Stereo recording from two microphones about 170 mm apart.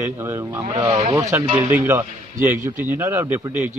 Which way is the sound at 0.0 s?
15° right (ahead or behind).